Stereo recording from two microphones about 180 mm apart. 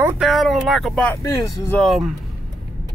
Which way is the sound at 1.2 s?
20° left (ahead or behind).